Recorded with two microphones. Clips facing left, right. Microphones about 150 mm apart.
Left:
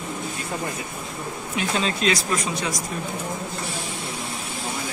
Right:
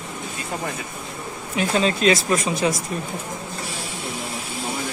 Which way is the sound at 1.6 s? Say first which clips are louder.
Right 4 dB; 45° right (ahead or behind).